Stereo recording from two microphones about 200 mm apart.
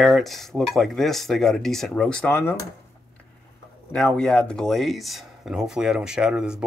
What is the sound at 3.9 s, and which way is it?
Speech, 5° left (ahead or behind).